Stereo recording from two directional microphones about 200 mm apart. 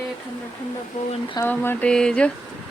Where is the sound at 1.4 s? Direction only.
10° left (ahead or behind).